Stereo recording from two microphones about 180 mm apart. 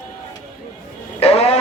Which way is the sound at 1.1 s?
35° left (ahead or behind).